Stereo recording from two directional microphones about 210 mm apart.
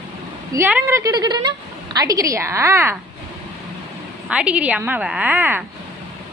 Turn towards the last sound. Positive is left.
turn(degrees=-10)  # may be behind; listen again after turning